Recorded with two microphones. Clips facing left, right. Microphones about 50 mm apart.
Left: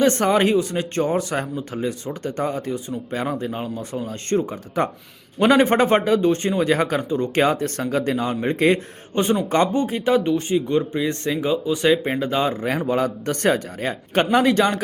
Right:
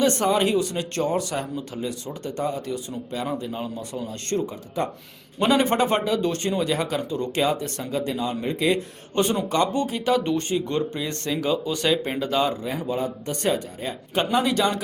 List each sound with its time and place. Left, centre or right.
0.0 s speech: left
4.8 s speech: left
5.4 s speech: left
6.2 s speech: left
6.6 s speech: left
9.1 s speech: left
10.2 s speech: centre; by 12.5 s left
12.6 s a man's voice: left
14.3 s speech: left